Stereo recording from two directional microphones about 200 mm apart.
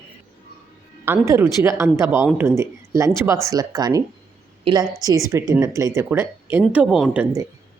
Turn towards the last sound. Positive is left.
turn(degrees=-5)  # may be behind; listen again after turning